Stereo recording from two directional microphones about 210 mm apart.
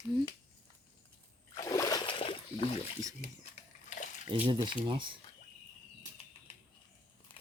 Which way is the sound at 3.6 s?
55° right (ahead or behind).